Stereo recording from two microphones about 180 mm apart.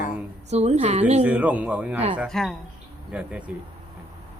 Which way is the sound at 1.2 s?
10° right (ahead or behind).